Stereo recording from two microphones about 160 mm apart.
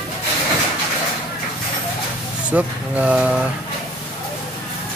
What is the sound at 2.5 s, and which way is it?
Speech, 10° right (ahead or behind).